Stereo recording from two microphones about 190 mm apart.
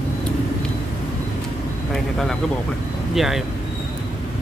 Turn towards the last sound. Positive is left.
turn(degrees=0)  # may be behind; listen again after turning